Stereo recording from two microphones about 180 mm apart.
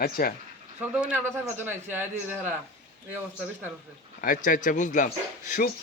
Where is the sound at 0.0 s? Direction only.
55° left (ahead or behind).